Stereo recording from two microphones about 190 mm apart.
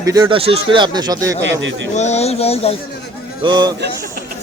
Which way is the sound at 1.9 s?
35° left (ahead or behind).